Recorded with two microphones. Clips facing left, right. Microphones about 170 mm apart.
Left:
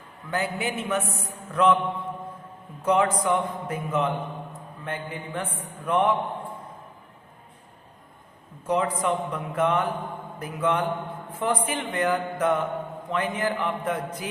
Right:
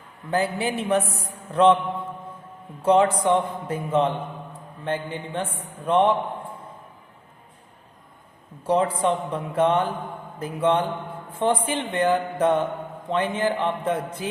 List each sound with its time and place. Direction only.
0.3 s a man's voice: 35° right (ahead or behind)
2.8 s mantra: 30° right (ahead or behind)
8.6 s mantra: 30° right (ahead or behind)